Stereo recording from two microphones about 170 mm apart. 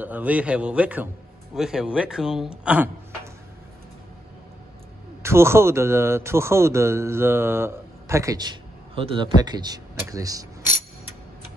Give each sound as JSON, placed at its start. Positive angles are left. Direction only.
{"t": 0.0, "sound": "a man's voice", "side_deg": -10}
{"t": 5.2, "sound": "a man's voice", "side_deg": -15}